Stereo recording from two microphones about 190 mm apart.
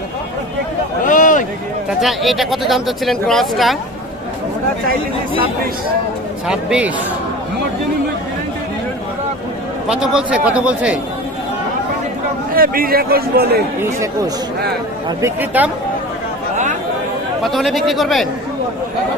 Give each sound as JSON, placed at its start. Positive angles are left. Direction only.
{"t": 1.0, "sound": "a sound", "side_deg": 45}
{"t": 1.9, "sound": "speech", "side_deg": 0}
{"t": 6.5, "sound": "speech", "side_deg": -5}
{"t": 9.9, "sound": "speech", "side_deg": -5}
{"t": 12.5, "sound": "a man's voice", "side_deg": -50}
{"t": 15.2, "sound": "speech", "side_deg": -10}
{"t": 17.4, "sound": "speech", "side_deg": 0}